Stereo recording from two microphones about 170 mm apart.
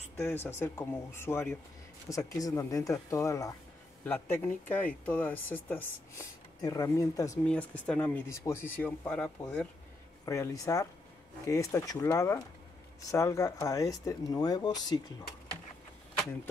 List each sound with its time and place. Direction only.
0.2 s speech: 15° left (ahead or behind)
7.4 s speech: 10° left (ahead or behind)
10.2 s speech: 20° left (ahead or behind)